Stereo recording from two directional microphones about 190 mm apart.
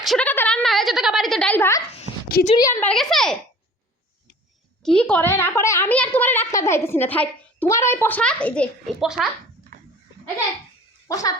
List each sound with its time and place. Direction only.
0.0 s a sound: 5° left (ahead or behind)
2.6 s a child's voice: 15° left (ahead or behind)
2.9 s a child's voice: centre (ahead or behind)
4.8 s a child's voice: 5° left (ahead or behind)
11.1 s a child's voice: 20° left (ahead or behind)